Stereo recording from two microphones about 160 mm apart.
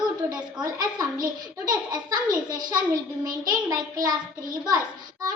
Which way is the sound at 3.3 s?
25° right (ahead or behind).